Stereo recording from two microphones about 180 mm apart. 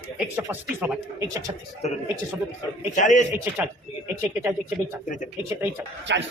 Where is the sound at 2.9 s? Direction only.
45° left (ahead or behind).